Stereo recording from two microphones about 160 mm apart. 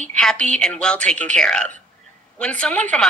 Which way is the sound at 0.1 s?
5° left (ahead or behind).